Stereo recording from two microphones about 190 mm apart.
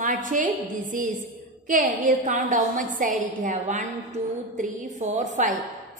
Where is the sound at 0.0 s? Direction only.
45° right (ahead or behind).